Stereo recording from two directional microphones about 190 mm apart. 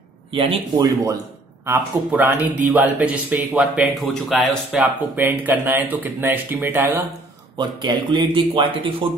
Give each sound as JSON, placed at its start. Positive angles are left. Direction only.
{"t": 0.3, "sound": "speech", "side_deg": -30}
{"t": 0.7, "sound": "speech", "side_deg": -20}
{"t": 7.5, "sound": "a man's voice", "side_deg": -25}